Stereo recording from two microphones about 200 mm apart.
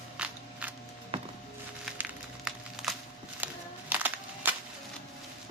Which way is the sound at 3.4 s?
10° right (ahead or behind).